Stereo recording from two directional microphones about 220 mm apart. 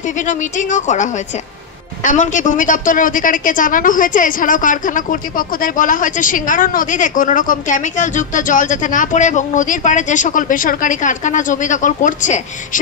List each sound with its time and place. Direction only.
0.3 s a woman's voice: 35° left (ahead or behind)
2.0 s a woman's voice: 35° left (ahead or behind)